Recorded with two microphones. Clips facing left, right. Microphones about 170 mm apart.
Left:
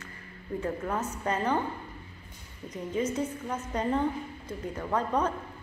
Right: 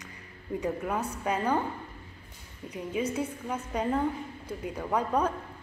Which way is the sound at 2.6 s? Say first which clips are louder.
Left 1 dB; 10° right (ahead or behind).